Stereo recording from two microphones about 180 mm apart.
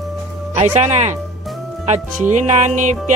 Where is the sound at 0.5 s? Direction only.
40° right (ahead or behind).